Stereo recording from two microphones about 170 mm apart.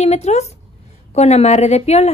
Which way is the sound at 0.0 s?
40° left (ahead or behind).